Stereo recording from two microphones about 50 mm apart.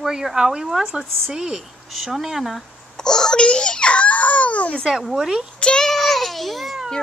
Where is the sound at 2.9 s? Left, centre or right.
Centre.